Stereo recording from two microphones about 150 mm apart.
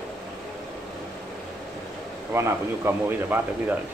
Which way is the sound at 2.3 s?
15° right (ahead or behind).